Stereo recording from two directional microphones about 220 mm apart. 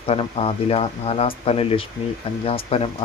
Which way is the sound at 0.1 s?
25° left (ahead or behind).